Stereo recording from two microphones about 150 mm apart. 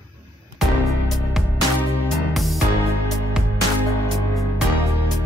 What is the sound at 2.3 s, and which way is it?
Music, centre (ahead or behind).